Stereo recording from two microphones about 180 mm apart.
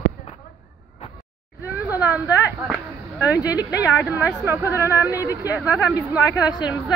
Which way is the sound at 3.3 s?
20° left (ahead or behind).